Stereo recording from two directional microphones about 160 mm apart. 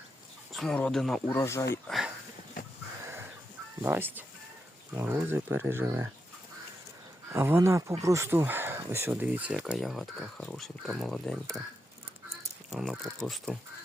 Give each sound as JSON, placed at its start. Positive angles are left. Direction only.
{"t": 0.5, "sound": "speech", "side_deg": 5}
{"t": 1.3, "sound": "speech", "side_deg": 15}
{"t": 1.9, "sound": "a sound", "side_deg": 0}
{"t": 3.0, "sound": "a sound", "side_deg": -15}
{"t": 3.8, "sound": "speech", "side_deg": -10}
{"t": 7.3, "sound": "speech", "side_deg": -15}
{"t": 12.7, "sound": "speech", "side_deg": 0}